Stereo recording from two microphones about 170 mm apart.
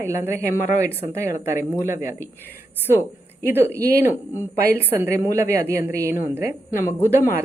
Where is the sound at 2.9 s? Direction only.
15° left (ahead or behind).